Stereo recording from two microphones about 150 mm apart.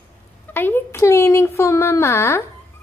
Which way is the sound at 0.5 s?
15° left (ahead or behind).